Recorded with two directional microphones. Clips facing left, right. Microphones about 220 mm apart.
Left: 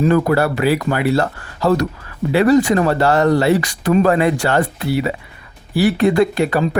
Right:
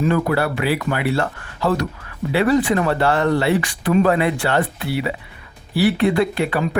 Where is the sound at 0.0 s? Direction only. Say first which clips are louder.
Left 4 dB; 40° left (ahead or behind).